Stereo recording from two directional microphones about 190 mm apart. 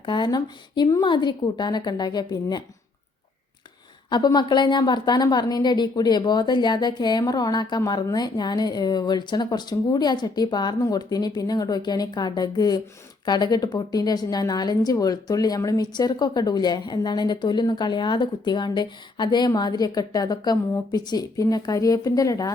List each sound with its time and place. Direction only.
0.0 s a woman's voice: 25° left (ahead or behind)
4.1 s a woman's voice: 20° left (ahead or behind)